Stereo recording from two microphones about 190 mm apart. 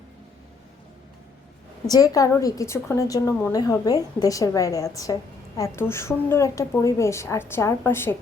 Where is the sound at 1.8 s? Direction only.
20° left (ahead or behind).